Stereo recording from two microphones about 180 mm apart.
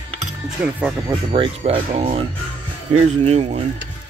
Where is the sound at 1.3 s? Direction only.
30° right (ahead or behind).